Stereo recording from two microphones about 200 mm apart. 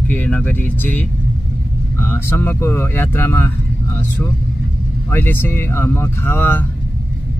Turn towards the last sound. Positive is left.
turn(degrees=10)  # may be behind; listen again after turning